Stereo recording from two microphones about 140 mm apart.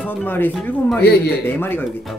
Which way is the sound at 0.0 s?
15° left (ahead or behind).